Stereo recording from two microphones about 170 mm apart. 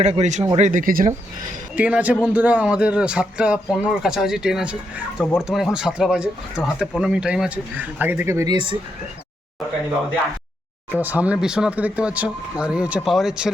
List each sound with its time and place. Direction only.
0.0 s speech: 40° right (ahead or behind)
1.7 s a man's voice: 10° right (ahead or behind)
10.9 s speech: 10° right (ahead or behind)